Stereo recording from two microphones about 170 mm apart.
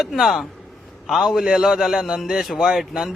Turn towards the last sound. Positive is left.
turn(degrees=-5)  # may be behind; listen again after turning